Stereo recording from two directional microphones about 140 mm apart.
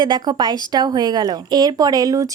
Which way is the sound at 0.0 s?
30° right (ahead or behind).